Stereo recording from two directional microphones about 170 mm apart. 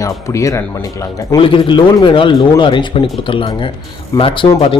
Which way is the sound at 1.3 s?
30° left (ahead or behind).